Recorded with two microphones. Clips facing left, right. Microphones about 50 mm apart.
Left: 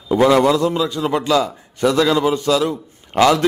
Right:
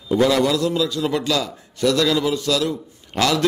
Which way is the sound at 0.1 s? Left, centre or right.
Left.